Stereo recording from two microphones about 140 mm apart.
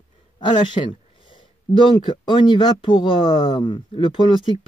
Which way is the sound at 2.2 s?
35° left (ahead or behind).